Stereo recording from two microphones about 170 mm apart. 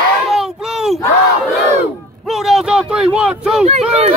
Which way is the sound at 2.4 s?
5° right (ahead or behind).